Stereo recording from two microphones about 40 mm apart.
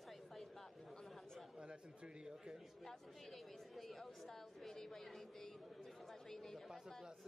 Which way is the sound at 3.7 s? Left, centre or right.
Centre.